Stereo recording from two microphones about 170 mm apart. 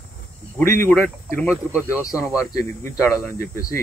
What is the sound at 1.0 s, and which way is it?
Speech, 15° left (ahead or behind).